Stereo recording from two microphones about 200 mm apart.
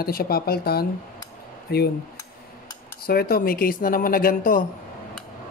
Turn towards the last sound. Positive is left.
turn(degrees=45)  # may be behind; listen again after turning